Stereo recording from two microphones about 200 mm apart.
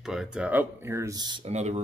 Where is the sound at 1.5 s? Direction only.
35° right (ahead or behind).